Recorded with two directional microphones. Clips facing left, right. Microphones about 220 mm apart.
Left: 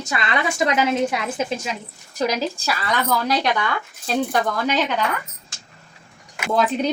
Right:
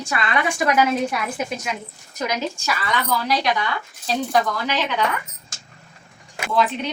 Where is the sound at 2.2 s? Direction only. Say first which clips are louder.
Left 3 dB; 35° left (ahead or behind).